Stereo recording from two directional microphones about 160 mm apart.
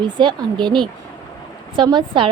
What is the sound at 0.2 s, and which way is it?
A woman's voice, 30° right (ahead or behind).